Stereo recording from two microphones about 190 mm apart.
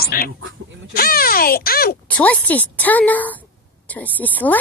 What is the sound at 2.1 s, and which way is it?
A woman's voice, 10° left (ahead or behind).